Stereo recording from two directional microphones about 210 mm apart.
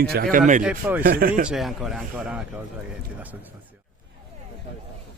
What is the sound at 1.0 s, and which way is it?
Speech, 45° right (ahead or behind).